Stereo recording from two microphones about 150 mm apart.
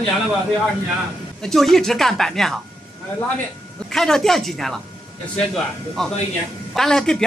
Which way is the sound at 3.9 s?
Centre (ahead or behind).